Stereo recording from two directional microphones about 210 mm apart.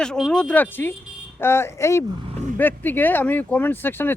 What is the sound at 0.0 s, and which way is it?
Speech, centre (ahead or behind).